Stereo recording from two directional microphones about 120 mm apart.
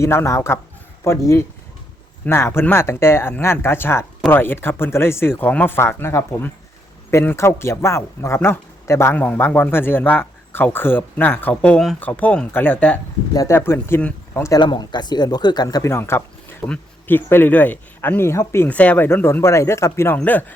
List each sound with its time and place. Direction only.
0.0 s speech: 25° left (ahead or behind)
13.3 s speech: 25° left (ahead or behind)
14.6 s speech: 40° left (ahead or behind); by 20.4 s 15° left (ahead or behind)